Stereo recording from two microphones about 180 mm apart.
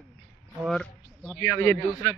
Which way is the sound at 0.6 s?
Centre (ahead or behind).